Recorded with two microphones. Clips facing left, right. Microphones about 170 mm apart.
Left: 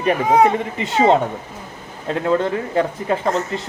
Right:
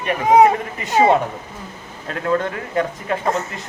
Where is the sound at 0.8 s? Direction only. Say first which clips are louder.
Even; 25° left (ahead or behind).